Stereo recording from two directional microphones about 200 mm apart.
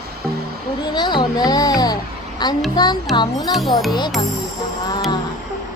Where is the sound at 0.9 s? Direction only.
20° left (ahead or behind).